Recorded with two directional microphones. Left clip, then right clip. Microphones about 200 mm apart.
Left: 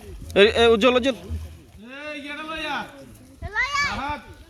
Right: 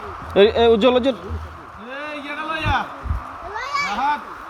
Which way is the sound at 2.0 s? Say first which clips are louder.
Right 4 dB; 40° right (ahead or behind).